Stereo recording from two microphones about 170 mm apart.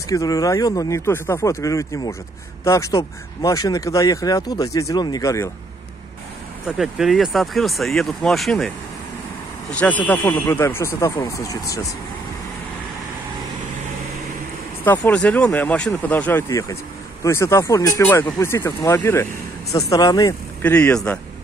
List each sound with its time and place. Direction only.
0.1 s speech: 20° left (ahead or behind)
6.8 s speech: centre (ahead or behind); by 11.8 s 20° left (ahead or behind)
14.9 s speech: 10° left (ahead or behind)